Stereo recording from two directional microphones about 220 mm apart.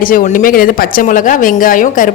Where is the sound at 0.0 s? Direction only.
40° left (ahead or behind).